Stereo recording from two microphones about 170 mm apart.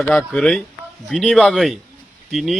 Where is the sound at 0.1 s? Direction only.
Centre (ahead or behind).